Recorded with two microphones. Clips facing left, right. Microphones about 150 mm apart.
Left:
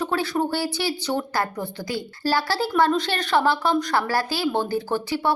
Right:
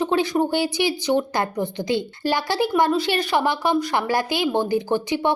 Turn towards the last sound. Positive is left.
turn(degrees=-20)  # may be behind; listen again after turning